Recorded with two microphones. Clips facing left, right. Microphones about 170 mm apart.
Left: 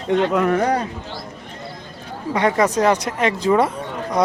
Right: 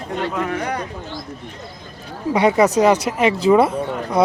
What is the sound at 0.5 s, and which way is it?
Speech, 35° left (ahead or behind).